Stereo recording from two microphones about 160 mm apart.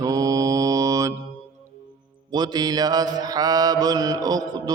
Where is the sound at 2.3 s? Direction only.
25° right (ahead or behind).